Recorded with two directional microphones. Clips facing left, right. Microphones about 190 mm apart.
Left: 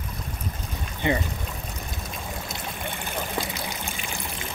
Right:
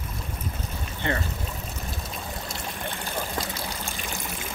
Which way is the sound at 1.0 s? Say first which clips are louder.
Left 4 dB; 15° left (ahead or behind).